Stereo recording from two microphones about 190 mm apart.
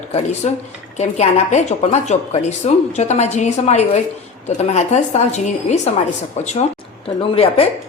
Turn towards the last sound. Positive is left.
turn(degrees=30)  # may be behind; listen again after turning